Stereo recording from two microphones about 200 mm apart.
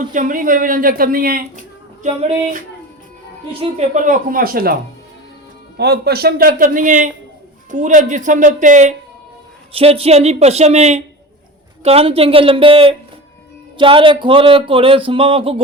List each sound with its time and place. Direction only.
0.0 s speech: 40° right (ahead or behind)